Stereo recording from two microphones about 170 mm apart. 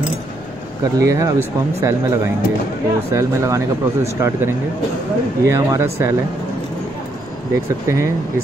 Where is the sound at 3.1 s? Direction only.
20° right (ahead or behind).